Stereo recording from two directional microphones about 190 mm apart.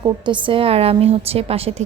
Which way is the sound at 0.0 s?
25° right (ahead or behind).